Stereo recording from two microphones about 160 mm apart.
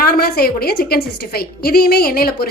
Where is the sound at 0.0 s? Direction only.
75° left (ahead or behind).